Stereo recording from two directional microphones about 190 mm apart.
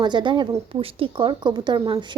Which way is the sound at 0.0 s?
25° right (ahead or behind).